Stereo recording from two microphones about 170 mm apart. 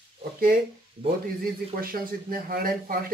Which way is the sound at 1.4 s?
60° right (ahead or behind).